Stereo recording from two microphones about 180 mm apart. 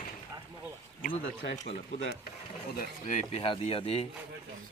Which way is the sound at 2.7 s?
45° left (ahead or behind).